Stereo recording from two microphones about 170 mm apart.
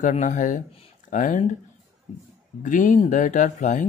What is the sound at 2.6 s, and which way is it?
Speech, 50° left (ahead or behind).